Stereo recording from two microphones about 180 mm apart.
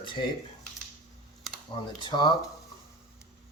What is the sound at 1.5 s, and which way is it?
Computer keyboard, centre (ahead or behind).